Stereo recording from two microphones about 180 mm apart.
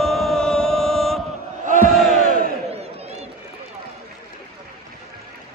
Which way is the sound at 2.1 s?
50° right (ahead or behind).